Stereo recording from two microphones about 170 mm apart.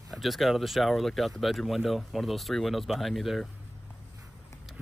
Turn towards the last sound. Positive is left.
turn(degrees=0)  # may be behind; listen again after turning